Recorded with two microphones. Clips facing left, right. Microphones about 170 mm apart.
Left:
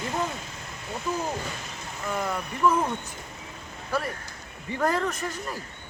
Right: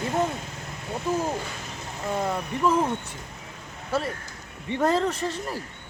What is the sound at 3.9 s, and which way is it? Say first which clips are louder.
Speech: right 2 dB; 25° right (ahead or behind).